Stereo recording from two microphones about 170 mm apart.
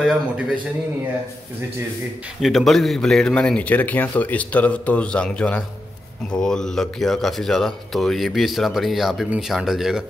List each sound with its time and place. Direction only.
0.0 s a man's voice: 5° right (ahead or behind)
2.4 s speech: centre (ahead or behind)